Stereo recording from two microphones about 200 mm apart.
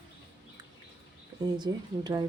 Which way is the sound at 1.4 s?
20° right (ahead or behind).